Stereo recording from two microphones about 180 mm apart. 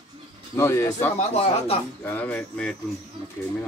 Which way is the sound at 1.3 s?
35° left (ahead or behind).